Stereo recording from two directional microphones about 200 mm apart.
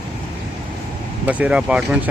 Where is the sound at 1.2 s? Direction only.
5° right (ahead or behind).